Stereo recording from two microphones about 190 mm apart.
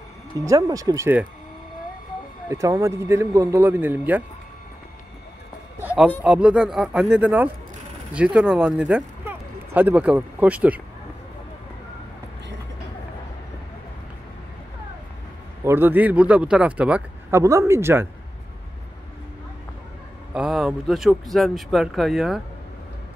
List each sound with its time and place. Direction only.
0.5 s speech: 20° right (ahead or behind)
2.5 s speech: 15° right (ahead or behind)
5.8 s a man's voice: 10° right (ahead or behind)
15.6 s speech: 10° right (ahead or behind)
20.3 s speech: centre (ahead or behind)